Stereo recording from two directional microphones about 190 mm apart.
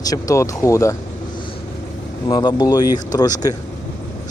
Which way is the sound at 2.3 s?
20° left (ahead or behind).